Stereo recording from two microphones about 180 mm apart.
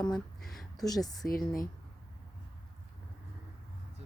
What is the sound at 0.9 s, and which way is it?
Speech, 20° left (ahead or behind).